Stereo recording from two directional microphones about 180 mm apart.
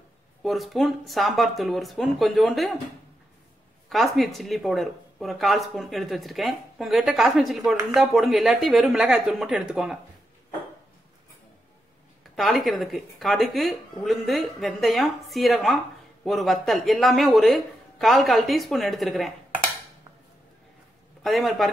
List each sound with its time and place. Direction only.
0.4 s speech: centre (ahead or behind)
3.9 s speech: centre (ahead or behind)
12.4 s speech: centre (ahead or behind)
21.2 s speech: centre (ahead or behind)